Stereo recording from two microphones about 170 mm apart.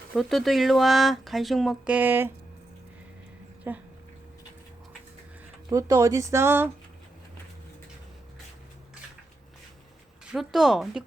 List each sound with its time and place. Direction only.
0.1 s speech: centre (ahead or behind)
3.7 s speech: 10° right (ahead or behind)
5.6 s speech: 20° right (ahead or behind)
10.3 s speech: centre (ahead or behind)